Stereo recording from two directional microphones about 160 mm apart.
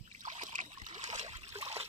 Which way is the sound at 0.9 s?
45° right (ahead or behind).